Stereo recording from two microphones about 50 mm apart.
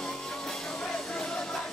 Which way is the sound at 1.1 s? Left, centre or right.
Centre.